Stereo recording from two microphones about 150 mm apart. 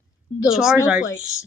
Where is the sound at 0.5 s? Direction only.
5° right (ahead or behind).